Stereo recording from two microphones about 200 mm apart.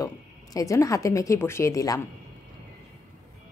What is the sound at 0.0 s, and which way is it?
Speech, 15° left (ahead or behind).